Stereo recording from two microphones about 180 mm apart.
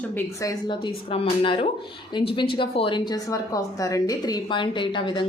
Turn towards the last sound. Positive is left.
turn(degrees=25)  # may be behind; listen again after turning